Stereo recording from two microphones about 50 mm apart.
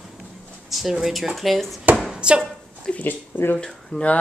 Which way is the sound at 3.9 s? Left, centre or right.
Left.